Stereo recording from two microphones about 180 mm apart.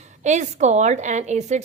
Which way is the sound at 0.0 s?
40° right (ahead or behind).